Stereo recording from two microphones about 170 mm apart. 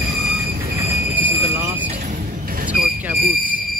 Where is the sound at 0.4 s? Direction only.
65° right (ahead or behind).